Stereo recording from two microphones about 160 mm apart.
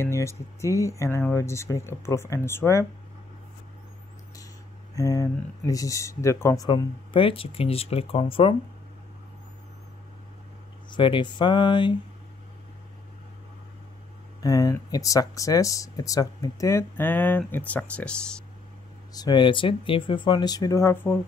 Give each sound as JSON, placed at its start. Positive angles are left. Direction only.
{"t": 0.0, "sound": "speech", "side_deg": 15}
{"t": 4.9, "sound": "speech", "side_deg": 20}
{"t": 10.9, "sound": "speech", "side_deg": 30}
{"t": 14.4, "sound": "speech", "side_deg": 20}
{"t": 19.1, "sound": "speech", "side_deg": 25}